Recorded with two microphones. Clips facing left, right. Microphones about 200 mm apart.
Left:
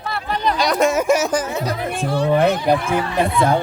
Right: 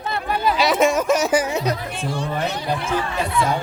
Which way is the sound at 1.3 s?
10° right (ahead or behind).